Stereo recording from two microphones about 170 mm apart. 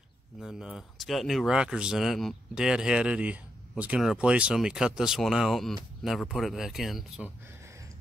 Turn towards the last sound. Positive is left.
turn(degrees=-15)  # may be behind; listen again after turning